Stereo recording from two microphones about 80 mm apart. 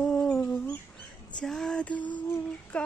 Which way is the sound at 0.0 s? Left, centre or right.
Centre.